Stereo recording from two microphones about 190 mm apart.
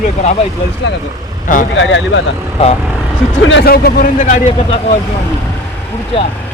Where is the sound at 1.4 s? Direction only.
45° left (ahead or behind).